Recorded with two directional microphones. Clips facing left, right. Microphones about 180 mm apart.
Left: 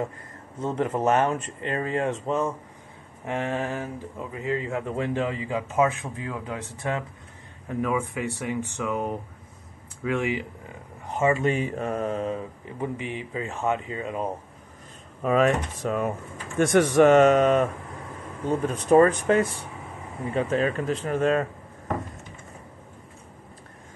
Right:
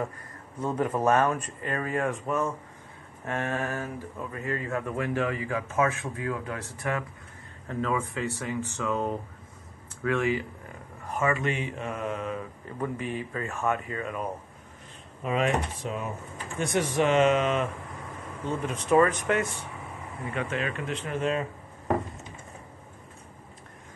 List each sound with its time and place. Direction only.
0.6 s speech: 25° left (ahead or behind)
12.6 s speech: 15° left (ahead or behind)
15.2 s speech: 45° left (ahead or behind)
16.5 s speech: 65° left (ahead or behind); by 21.5 s 50° left (ahead or behind)